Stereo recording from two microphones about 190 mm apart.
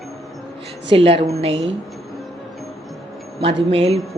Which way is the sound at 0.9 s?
30° right (ahead or behind).